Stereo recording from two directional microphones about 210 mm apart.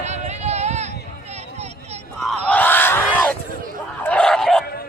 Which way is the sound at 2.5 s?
10° left (ahead or behind).